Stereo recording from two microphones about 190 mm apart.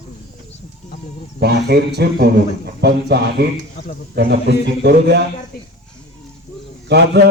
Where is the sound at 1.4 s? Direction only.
60° right (ahead or behind).